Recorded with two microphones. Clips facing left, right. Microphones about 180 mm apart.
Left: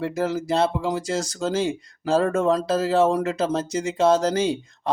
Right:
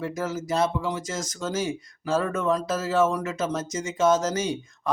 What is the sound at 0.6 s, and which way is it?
Speech, 75° left (ahead or behind).